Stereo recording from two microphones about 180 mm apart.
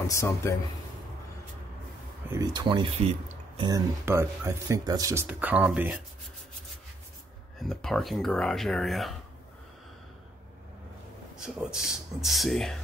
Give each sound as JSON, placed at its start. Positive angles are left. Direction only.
{"t": 0.0, "sound": "speech", "side_deg": 15}
{"t": 2.3, "sound": "speech", "side_deg": -20}
{"t": 7.5, "sound": "speech", "side_deg": 0}
{"t": 11.3, "sound": "speech", "side_deg": -5}